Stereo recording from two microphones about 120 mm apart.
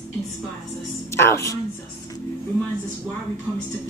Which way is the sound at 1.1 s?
25° left (ahead or behind).